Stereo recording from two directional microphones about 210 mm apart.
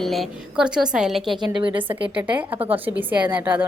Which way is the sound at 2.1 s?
5° right (ahead or behind).